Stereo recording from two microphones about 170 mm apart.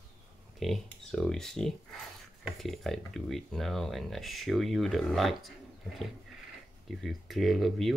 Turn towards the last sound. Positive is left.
turn(degrees=0)  # may be behind; listen again after turning